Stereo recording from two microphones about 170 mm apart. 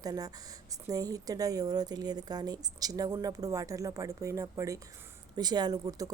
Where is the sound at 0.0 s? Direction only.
20° right (ahead or behind).